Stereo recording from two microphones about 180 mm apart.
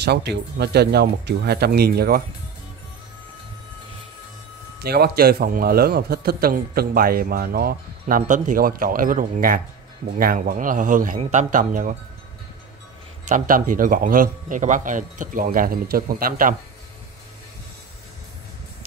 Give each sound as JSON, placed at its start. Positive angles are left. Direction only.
{"t": 0.0, "sound": "a man's voice", "side_deg": -65}
{"t": 4.7, "sound": "a man's voice", "side_deg": -60}
{"t": 13.3, "sound": "a man's voice", "side_deg": -50}